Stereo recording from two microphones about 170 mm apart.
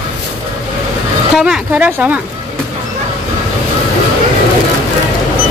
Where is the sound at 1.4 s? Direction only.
5° right (ahead or behind).